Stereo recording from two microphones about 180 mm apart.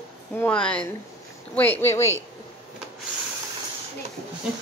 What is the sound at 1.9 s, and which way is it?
Speech, 35° left (ahead or behind).